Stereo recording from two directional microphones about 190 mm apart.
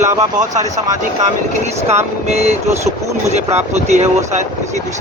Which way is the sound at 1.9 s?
35° right (ahead or behind).